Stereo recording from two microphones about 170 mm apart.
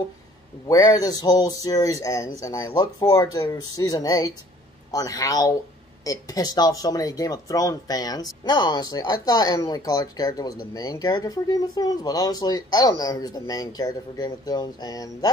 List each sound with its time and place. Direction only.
0.7 s speech: 20° left (ahead or behind)